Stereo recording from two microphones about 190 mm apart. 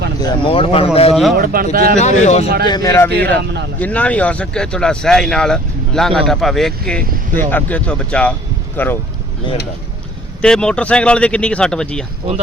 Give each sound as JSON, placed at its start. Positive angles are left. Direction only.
{"t": 0.2, "sound": "speech", "side_deg": 25}
{"t": 1.1, "sound": "speech", "side_deg": 0}
{"t": 1.7, "sound": "speech", "side_deg": -50}
{"t": 2.0, "sound": "speech", "side_deg": 40}
{"t": 2.6, "sound": "speech", "side_deg": 20}
{"t": 3.1, "sound": "speech", "side_deg": -60}
{"t": 3.8, "sound": "speech", "side_deg": 5}
{"t": 10.4, "sound": "speech", "side_deg": 5}